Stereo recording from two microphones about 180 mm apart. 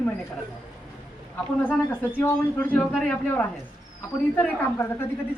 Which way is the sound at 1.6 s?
10° left (ahead or behind).